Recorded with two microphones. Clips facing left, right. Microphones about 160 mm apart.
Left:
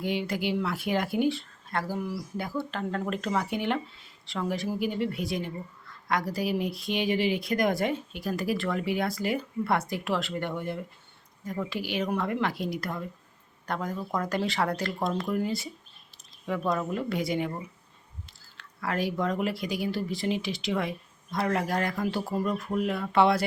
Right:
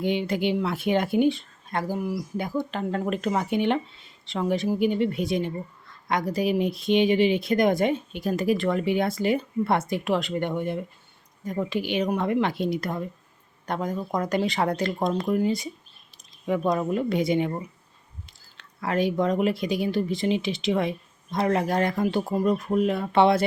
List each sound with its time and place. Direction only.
0.0 s speech: 20° right (ahead or behind)